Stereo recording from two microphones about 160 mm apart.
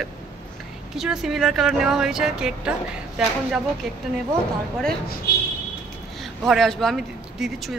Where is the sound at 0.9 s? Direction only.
5° right (ahead or behind).